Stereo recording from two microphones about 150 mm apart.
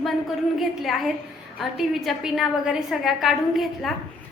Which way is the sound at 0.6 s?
Centre (ahead or behind).